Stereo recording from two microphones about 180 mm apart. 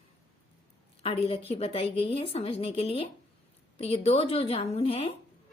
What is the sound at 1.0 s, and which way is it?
Speech, 35° left (ahead or behind).